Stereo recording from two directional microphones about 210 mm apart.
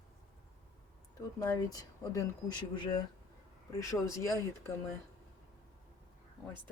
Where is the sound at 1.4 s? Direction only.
15° left (ahead or behind).